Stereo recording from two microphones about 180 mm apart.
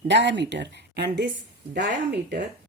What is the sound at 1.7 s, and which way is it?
Speech, 70° right (ahead or behind).